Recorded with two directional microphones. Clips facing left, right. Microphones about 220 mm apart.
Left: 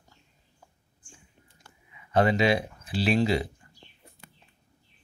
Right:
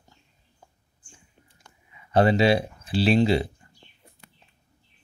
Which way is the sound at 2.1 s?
30° right (ahead or behind).